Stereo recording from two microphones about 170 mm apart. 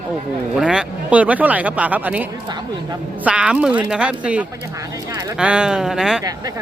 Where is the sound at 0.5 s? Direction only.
5° right (ahead or behind).